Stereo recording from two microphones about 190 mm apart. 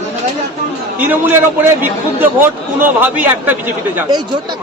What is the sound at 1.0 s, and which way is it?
A man's voice, 10° right (ahead or behind).